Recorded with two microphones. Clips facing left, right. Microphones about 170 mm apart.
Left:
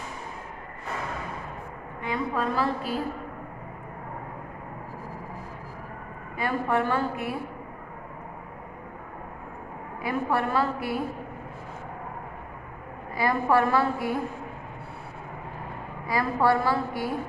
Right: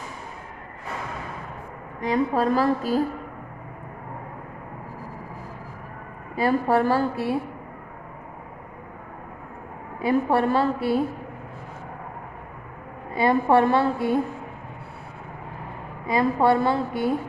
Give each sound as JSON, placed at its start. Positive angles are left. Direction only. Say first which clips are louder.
{"t": 2.0, "sound": "a woman's voice", "louder": "right 6 dB", "side_deg": -40}
{"t": 6.3, "sound": "a woman's voice", "louder": "right 5 dB", "side_deg": -35}
{"t": 10.0, "sound": "a woman's voice", "louder": "right 6 dB", "side_deg": -25}
{"t": 13.1, "sound": "a woman's voice", "louder": "right 4 dB", "side_deg": -25}
{"t": 16.0, "sound": "a woman's voice", "louder": "right 4 dB", "side_deg": -20}